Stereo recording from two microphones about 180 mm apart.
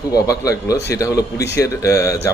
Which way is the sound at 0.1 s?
20° left (ahead or behind).